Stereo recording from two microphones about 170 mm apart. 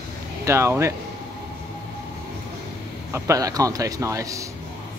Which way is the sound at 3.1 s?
20° right (ahead or behind).